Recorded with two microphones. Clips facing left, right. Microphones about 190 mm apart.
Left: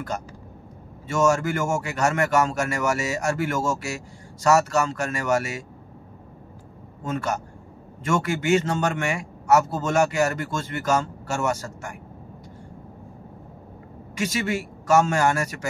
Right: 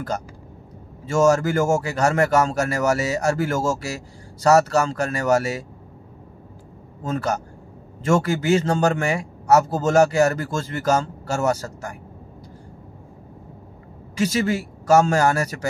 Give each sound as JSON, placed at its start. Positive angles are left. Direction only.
{"t": 1.0, "sound": "a man's voice", "side_deg": -35}
{"t": 7.1, "sound": "a man's voice", "side_deg": -35}
{"t": 14.1, "sound": "a man's voice", "side_deg": -30}